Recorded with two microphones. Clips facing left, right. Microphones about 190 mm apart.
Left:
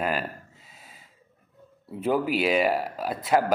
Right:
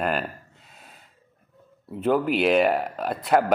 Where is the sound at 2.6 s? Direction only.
55° right (ahead or behind).